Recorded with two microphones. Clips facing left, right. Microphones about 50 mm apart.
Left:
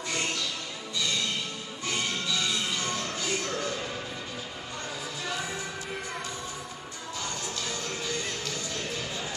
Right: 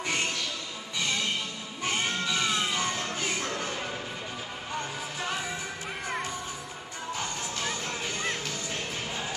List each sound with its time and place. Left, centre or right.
0.0 s music: right
7.2 s music: right